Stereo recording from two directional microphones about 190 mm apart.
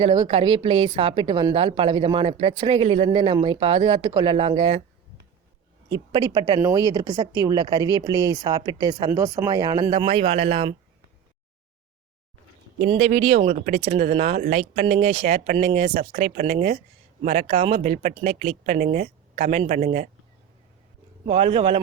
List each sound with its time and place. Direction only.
0.0 s a woman's voice: 25° right (ahead or behind)
5.9 s a woman's voice: 25° right (ahead or behind)
12.9 s speech: 35° right (ahead or behind)
21.2 s a woman's voice: 30° right (ahead or behind)